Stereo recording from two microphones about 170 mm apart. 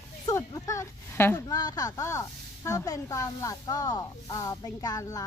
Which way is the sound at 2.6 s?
20° left (ahead or behind).